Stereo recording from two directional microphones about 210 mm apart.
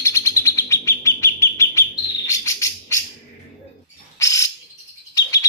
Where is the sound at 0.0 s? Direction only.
15° left (ahead or behind).